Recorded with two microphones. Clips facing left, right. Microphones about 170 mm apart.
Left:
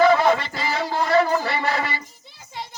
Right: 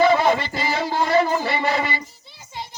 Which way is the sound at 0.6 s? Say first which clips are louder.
Right 1 dB; centre (ahead or behind).